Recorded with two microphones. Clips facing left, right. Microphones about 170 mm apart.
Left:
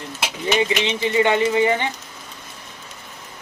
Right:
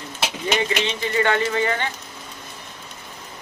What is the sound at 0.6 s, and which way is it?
Speech, 15° left (ahead or behind).